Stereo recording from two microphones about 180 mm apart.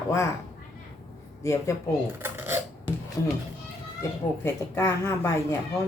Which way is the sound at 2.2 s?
15° right (ahead or behind).